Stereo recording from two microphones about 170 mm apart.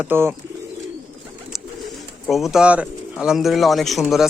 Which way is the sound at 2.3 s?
Centre (ahead or behind).